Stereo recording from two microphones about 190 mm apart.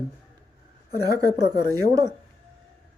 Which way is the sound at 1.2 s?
55° left (ahead or behind).